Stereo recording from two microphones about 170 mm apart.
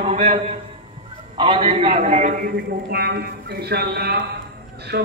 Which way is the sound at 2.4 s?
70° right (ahead or behind).